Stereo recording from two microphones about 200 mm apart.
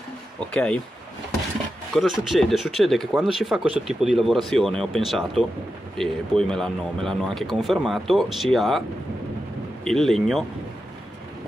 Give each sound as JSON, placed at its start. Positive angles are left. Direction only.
{"t": 0.5, "sound": "speech", "side_deg": 5}
{"t": 1.9, "sound": "speech", "side_deg": 0}
{"t": 9.8, "sound": "speech", "side_deg": 0}